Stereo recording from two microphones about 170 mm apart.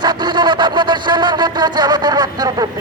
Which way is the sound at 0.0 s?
25° right (ahead or behind).